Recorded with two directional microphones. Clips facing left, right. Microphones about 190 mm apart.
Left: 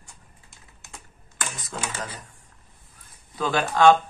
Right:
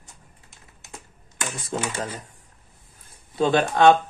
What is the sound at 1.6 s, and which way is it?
Speech, 30° right (ahead or behind).